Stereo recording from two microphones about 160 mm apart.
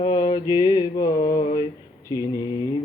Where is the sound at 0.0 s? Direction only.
35° left (ahead or behind).